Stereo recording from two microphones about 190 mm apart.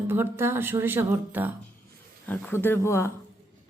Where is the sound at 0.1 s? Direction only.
10° right (ahead or behind).